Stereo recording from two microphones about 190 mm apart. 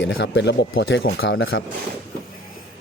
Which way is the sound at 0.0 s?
70° left (ahead or behind).